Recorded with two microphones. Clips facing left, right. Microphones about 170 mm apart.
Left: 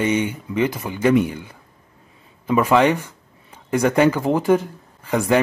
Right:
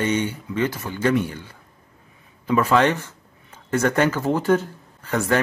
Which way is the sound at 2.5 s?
15° left (ahead or behind).